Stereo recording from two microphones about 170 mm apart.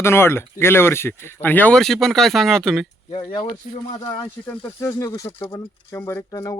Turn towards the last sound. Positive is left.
turn(degrees=20)  # may be behind; listen again after turning